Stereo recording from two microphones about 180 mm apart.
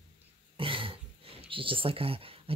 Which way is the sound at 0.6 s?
30° right (ahead or behind).